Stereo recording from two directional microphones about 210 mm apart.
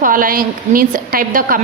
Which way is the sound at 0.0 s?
40° right (ahead or behind).